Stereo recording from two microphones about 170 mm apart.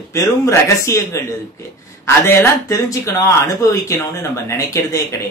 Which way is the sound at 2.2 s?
15° left (ahead or behind).